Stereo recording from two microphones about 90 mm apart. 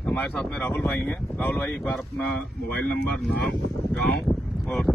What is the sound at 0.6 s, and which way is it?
Speech, 25° left (ahead or behind).